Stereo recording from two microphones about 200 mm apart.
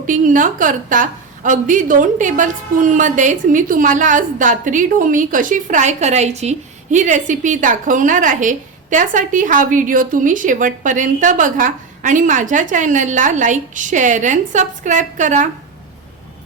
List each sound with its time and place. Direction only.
0.0 s a woman's voice: 40° right (ahead or behind)